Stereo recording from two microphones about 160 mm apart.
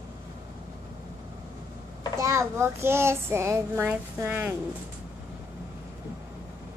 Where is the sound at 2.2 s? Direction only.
15° right (ahead or behind).